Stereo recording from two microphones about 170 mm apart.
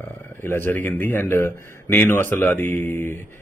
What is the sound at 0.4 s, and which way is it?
Speech, 10° left (ahead or behind).